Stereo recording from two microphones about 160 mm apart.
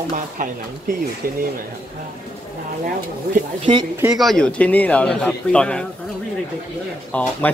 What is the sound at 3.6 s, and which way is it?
Speech, 30° right (ahead or behind).